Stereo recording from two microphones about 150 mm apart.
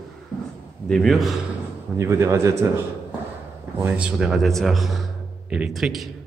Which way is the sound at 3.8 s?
10° right (ahead or behind).